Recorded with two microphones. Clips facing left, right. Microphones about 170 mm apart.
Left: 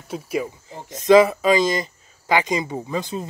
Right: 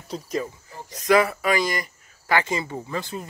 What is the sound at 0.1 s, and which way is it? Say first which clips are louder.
Speech: left 3 dB; 10° left (ahead or behind).